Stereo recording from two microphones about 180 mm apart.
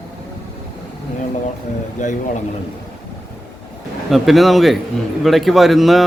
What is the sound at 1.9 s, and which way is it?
Speech, 45° left (ahead or behind).